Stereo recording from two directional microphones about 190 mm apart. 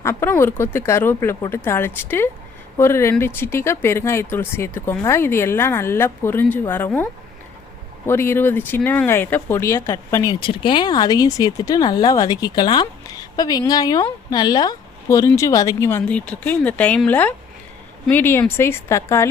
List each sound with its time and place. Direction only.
0.0 s speech: 10° left (ahead or behind)
10.4 s speech: 25° left (ahead or behind)